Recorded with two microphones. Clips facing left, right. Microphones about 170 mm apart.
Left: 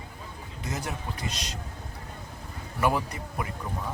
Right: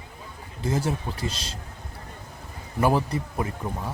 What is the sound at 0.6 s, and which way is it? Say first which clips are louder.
Speech: right 8 dB; 30° right (ahead or behind).